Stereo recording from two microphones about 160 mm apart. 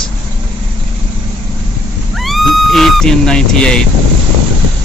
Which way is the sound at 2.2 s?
Centre (ahead or behind).